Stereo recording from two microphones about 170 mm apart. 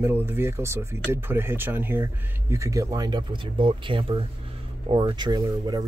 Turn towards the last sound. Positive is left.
turn(degrees=-25)  # may be behind; listen again after turning